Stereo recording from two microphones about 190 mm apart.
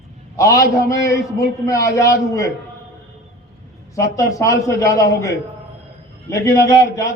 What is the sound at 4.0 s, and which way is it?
A man's voice, 15° left (ahead or behind).